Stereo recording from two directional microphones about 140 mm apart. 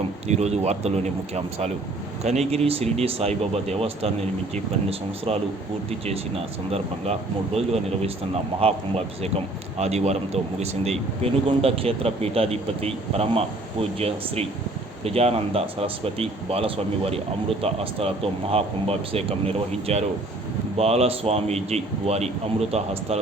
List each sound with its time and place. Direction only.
0.3 s speech: 50° right (ahead or behind)